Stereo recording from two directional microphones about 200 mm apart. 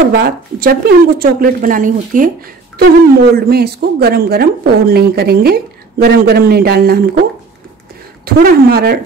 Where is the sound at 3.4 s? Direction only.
50° right (ahead or behind).